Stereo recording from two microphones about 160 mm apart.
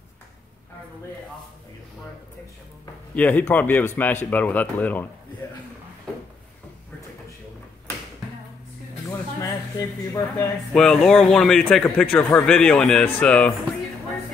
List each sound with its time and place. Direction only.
3.2 s speech: 10° left (ahead or behind)
9.4 s speech: 20° left (ahead or behind)
10.7 s a man's voice: 5° left (ahead or behind)